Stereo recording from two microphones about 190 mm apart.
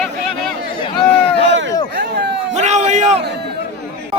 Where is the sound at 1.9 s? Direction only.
55° right (ahead or behind).